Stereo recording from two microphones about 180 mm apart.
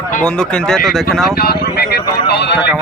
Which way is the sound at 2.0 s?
25° left (ahead or behind).